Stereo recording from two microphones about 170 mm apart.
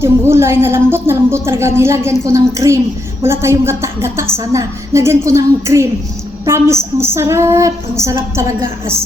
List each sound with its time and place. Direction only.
0.0 s a woman's voice: 15° right (ahead or behind)